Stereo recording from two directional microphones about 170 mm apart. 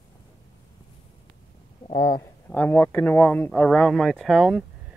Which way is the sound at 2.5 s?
10° left (ahead or behind).